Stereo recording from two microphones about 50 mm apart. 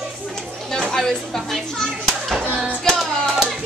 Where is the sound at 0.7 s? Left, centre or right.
Centre.